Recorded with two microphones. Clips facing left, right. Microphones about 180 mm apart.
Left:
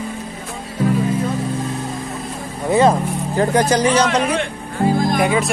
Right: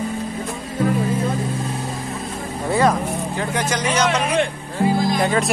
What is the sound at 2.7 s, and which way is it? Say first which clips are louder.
Speech: left 4 dB; 25° left (ahead or behind).